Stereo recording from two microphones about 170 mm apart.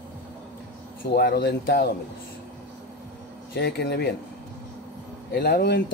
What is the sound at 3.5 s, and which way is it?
Speech, 75° left (ahead or behind).